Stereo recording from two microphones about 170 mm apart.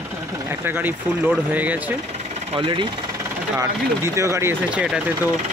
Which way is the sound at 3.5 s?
15° right (ahead or behind).